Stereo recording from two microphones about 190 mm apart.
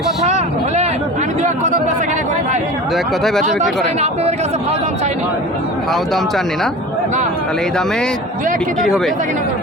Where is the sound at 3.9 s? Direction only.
35° right (ahead or behind).